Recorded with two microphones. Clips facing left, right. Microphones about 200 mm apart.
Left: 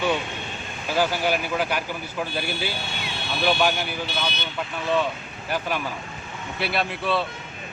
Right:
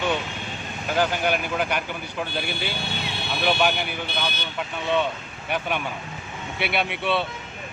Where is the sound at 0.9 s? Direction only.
5° left (ahead or behind).